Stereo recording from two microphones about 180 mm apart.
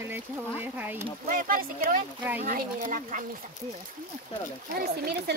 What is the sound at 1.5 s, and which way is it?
Speech, 50° right (ahead or behind).